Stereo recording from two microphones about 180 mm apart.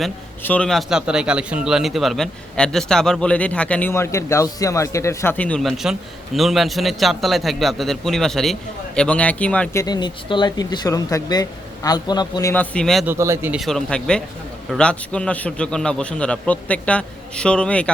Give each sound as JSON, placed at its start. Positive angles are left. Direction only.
{"t": 0.4, "sound": "speech", "side_deg": 5}
{"t": 9.8, "sound": "speech", "side_deg": 25}
{"t": 13.1, "sound": "speech", "side_deg": -15}
{"t": 13.6, "sound": "speech", "side_deg": 0}